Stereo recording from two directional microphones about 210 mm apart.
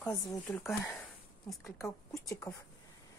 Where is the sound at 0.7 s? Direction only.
Centre (ahead or behind).